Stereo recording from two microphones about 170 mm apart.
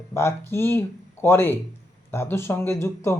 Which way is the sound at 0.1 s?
15° left (ahead or behind).